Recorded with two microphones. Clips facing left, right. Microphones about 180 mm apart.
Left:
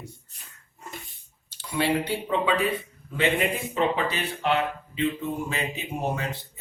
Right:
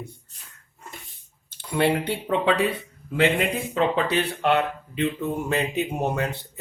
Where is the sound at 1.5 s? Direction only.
55° right (ahead or behind).